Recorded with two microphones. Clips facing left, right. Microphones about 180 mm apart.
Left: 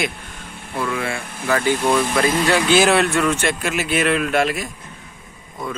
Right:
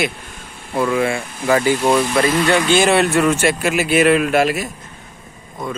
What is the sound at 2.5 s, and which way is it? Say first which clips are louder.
Speech: left 1 dB; 5° left (ahead or behind).